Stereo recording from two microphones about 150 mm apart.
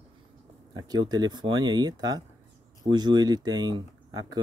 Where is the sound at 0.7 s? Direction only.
25° right (ahead or behind).